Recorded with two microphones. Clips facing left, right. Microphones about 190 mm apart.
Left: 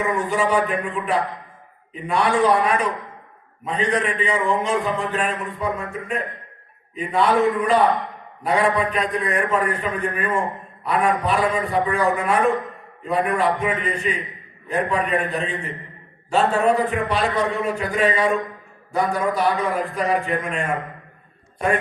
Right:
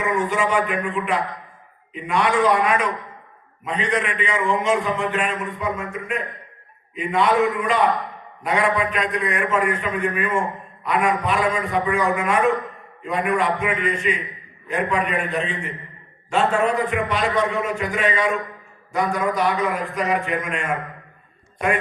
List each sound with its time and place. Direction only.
0.1 s a man's voice: 35° left (ahead or behind)